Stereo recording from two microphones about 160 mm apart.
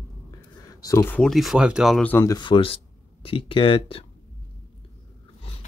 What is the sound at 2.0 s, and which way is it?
Speech, 15° left (ahead or behind).